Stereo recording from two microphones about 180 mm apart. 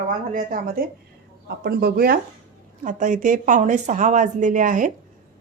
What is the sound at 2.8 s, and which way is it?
A woman's voice, 45° right (ahead or behind).